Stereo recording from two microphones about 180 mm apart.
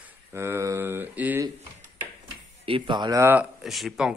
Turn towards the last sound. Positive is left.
turn(degrees=0)  # may be behind; listen again after turning